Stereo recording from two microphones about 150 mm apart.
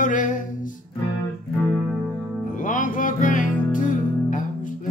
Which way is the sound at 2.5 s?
60° left (ahead or behind).